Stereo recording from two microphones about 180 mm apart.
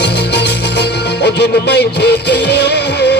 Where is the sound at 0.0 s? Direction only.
70° left (ahead or behind).